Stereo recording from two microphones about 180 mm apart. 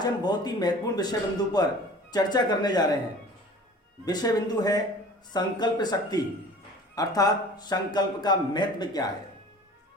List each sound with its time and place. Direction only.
0.0 s a man's voice: 25° left (ahead or behind)
4.0 s a man's voice: 20° left (ahead or behind)